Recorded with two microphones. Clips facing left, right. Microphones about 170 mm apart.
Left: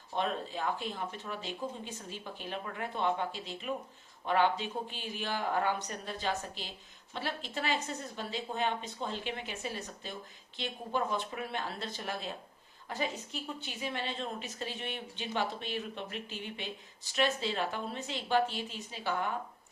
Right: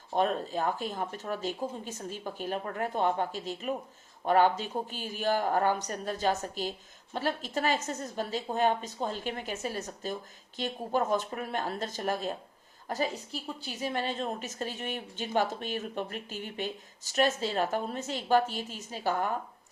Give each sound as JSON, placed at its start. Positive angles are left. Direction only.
{"t": 0.1, "sound": "a woman's voice", "side_deg": -45}